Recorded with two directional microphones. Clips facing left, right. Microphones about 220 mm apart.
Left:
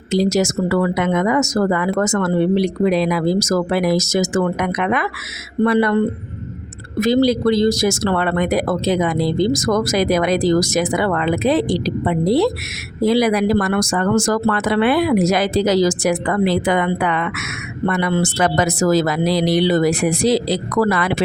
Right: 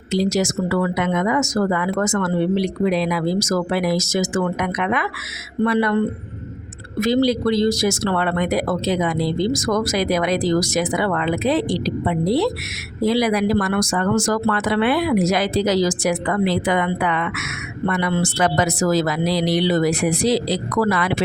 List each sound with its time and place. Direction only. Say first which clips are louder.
0.1 s speech: left 3 dB; 45° left (ahead or behind)
7.0 s speech: left 3 dB; 45° left (ahead or behind)